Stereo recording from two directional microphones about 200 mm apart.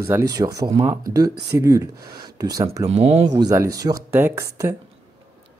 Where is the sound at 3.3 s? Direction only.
15° right (ahead or behind).